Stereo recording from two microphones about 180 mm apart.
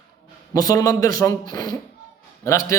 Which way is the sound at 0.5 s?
20° left (ahead or behind).